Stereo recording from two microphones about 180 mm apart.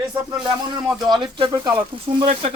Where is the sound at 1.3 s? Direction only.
25° right (ahead or behind).